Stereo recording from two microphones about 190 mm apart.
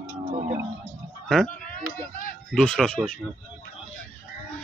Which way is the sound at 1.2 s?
Centre (ahead or behind).